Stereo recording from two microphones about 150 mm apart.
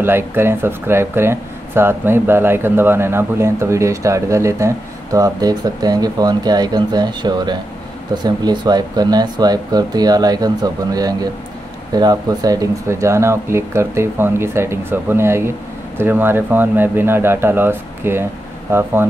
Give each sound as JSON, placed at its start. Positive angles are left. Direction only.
{"t": 0.0, "sound": "speech", "side_deg": -15}